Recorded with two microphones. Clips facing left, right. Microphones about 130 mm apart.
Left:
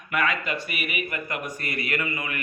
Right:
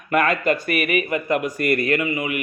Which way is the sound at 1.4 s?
80° right.